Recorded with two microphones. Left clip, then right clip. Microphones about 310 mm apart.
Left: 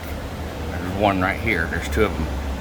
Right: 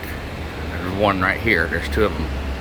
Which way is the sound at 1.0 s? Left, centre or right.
Centre.